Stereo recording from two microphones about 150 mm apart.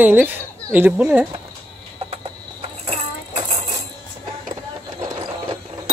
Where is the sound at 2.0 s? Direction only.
40° right (ahead or behind).